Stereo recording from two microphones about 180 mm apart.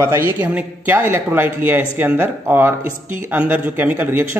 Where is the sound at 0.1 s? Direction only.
10° right (ahead or behind).